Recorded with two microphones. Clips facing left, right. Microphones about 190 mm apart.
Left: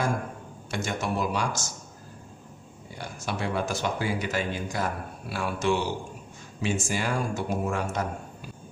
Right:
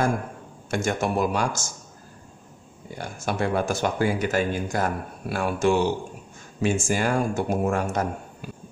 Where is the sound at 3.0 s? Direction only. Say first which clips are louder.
Right 5 dB; 50° right (ahead or behind).